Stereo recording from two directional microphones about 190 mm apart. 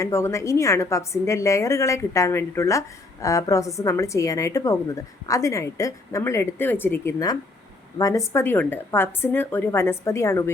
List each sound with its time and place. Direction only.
0.0 s a woman's voice: 15° left (ahead or behind)